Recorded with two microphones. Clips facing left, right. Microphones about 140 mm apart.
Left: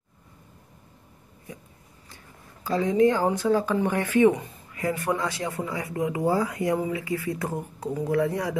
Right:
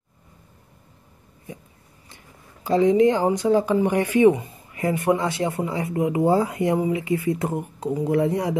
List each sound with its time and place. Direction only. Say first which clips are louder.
2.6 s speech: right 4 dB; 20° right (ahead or behind)
4.7 s speech: right 5 dB; 25° right (ahead or behind)